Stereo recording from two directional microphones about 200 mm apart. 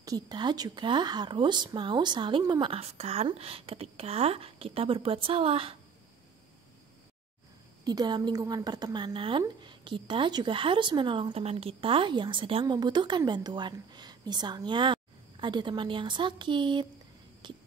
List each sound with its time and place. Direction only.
0.0 s a woman's voice: 20° right (ahead or behind)
7.8 s a woman's voice: 20° right (ahead or behind)